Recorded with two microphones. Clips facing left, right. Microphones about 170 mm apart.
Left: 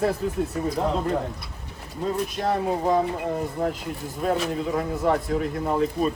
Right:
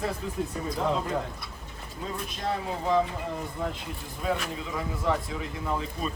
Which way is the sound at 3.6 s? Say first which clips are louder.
Left 6 dB; 45° left (ahead or behind).